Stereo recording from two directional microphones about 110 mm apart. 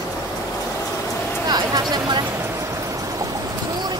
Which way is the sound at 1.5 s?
35° right (ahead or behind).